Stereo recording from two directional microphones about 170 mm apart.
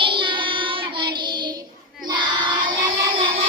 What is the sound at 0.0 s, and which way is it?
Child singing, 30° right (ahead or behind).